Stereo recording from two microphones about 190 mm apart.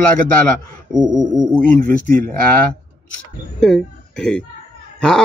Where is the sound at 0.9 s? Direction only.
20° right (ahead or behind).